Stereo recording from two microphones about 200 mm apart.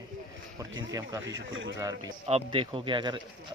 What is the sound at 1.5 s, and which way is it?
Speech, 70° right (ahead or behind).